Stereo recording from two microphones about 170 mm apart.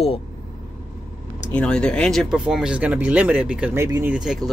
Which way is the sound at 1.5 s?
5° left (ahead or behind).